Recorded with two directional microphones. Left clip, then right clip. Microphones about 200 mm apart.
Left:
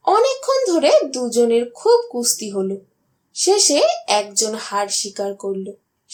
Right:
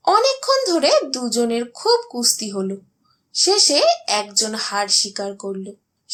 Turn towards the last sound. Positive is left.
turn(degrees=-30)  # may be behind; listen again after turning